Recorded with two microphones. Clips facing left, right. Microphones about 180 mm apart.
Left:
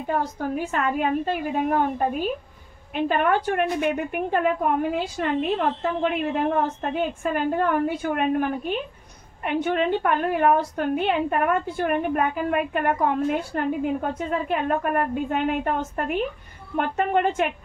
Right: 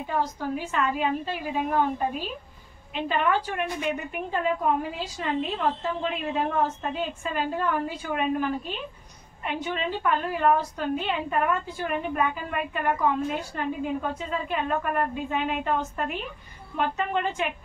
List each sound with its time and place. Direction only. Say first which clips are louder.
0.0 s a woman's voice: left 3 dB; 55° left (ahead or behind)